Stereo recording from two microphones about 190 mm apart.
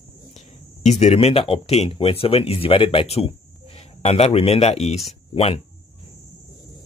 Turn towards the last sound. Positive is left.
turn(degrees=30)  # may be behind; listen again after turning